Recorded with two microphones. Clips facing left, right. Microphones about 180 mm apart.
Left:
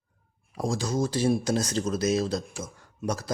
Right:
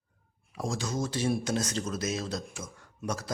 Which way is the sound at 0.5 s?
35° left (ahead or behind).